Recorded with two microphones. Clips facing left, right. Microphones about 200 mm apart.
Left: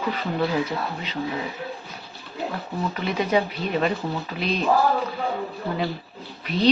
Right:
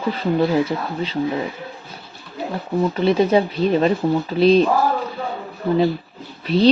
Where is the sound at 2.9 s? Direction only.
30° right (ahead or behind).